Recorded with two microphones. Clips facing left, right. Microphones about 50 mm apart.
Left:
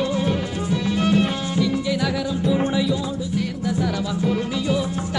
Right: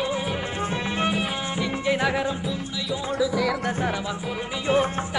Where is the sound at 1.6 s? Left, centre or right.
Right.